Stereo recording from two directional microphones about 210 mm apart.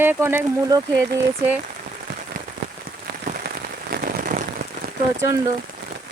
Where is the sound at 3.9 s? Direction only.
40° right (ahead or behind).